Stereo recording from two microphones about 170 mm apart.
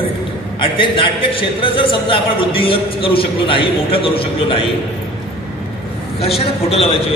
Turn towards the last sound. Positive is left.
turn(degrees=35)  # may be behind; listen again after turning